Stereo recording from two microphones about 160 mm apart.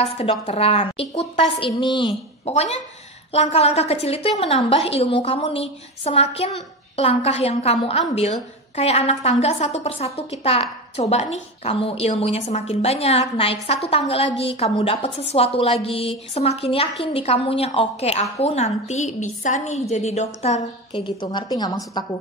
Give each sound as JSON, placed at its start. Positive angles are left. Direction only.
{"t": 0.0, "sound": "a woman's voice", "side_deg": 40}
{"t": 2.4, "sound": "a woman's voice", "side_deg": 40}
{"t": 20.9, "sound": "a woman's voice", "side_deg": 30}